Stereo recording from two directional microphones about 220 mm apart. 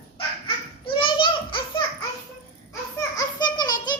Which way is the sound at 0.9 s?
20° left (ahead or behind).